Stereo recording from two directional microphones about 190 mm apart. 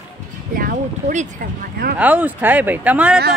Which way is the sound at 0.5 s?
45° right (ahead or behind).